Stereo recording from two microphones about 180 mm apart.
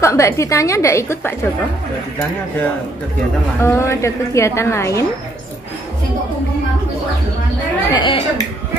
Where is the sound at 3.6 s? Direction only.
15° left (ahead or behind).